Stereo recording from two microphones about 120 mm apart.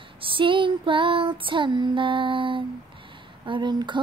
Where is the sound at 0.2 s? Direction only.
45° right (ahead or behind).